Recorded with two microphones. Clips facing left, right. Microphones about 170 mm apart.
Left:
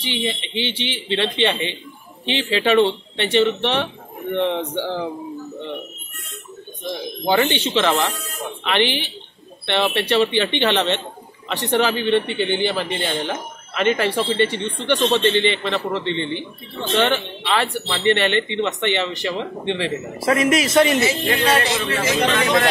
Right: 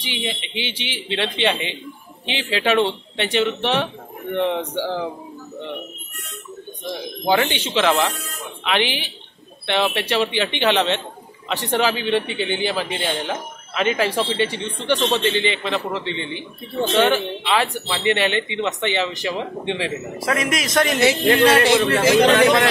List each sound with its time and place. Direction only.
0.0 s speech: 10° right (ahead or behind)
6.9 s a man's voice: 5° right (ahead or behind)
20.2 s a man's voice: centre (ahead or behind)
21.3 s a man's voice: 50° right (ahead or behind)